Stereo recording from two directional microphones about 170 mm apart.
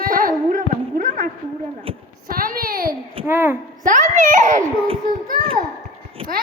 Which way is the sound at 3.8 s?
45° right (ahead or behind).